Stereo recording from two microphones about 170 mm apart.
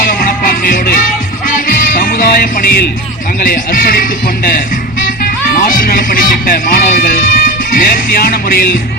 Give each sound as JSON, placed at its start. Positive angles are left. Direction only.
{"t": 0.1, "sound": "music", "side_deg": 55}
{"t": 3.4, "sound": "speech", "side_deg": 60}